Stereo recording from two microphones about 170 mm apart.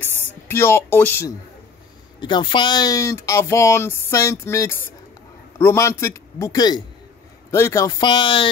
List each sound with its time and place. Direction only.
0.0 s speech: 15° left (ahead or behind)
2.1 s speech: 25° left (ahead or behind)